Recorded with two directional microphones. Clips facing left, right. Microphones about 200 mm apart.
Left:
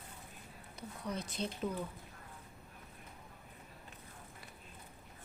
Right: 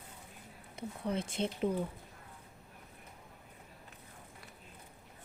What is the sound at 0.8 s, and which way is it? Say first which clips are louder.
Speech: right 5 dB; 25° right (ahead or behind).